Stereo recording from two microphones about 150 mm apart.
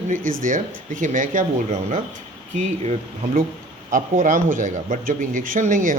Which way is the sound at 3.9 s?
60° right (ahead or behind).